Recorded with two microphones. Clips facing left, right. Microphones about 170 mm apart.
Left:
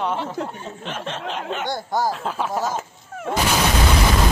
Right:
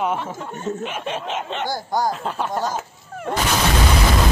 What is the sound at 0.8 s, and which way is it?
Speech, 10° right (ahead or behind).